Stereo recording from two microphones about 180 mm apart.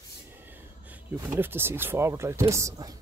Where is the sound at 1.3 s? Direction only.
10° right (ahead or behind).